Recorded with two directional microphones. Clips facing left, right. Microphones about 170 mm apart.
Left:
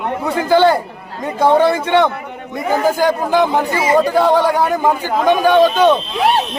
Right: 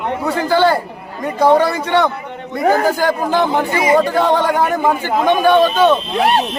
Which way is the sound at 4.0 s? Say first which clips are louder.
Left 2 dB; 10° left (ahead or behind).